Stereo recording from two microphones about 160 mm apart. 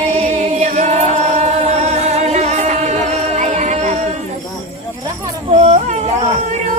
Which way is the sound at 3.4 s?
50° right (ahead or behind).